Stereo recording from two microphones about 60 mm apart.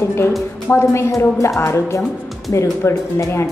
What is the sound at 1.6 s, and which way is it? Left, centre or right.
A woman's voice, left.